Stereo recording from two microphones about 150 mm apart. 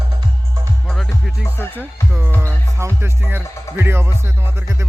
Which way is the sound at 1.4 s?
15° left (ahead or behind).